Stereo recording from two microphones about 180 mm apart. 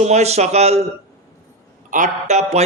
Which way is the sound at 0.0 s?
40° right (ahead or behind).